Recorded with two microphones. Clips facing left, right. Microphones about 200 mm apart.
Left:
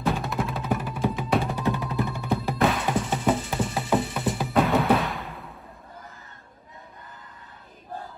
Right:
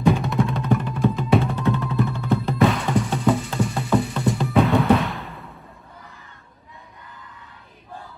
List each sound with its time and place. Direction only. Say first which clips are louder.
0.0 s music: right 7 dB; centre (ahead or behind)
2.3 s music: right 4 dB; centre (ahead or behind)
3.1 s music: right 3 dB; 20° left (ahead or behind)
3.5 s music: right 3 dB; 5° left (ahead or behind)